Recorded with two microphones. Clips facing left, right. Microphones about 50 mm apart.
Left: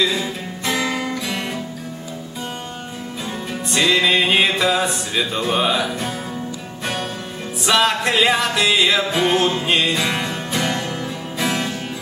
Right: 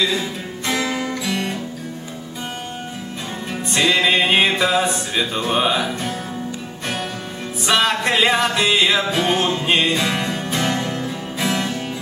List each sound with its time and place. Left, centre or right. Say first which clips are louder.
0.2 s music: left 1 dB; left
1.0 s music: right 1 dB; centre
3.7 s music: even; centre
7.6 s music: left 1 dB; centre
9.1 s music: left 1 dB; centre
9.7 s music: right 1 dB; centre
10.3 s music: right 1 dB; centre